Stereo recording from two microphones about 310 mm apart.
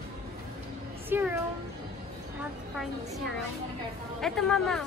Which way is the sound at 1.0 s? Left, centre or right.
Centre.